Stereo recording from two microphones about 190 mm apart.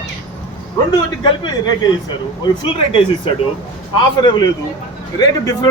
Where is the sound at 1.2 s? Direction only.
25° left (ahead or behind).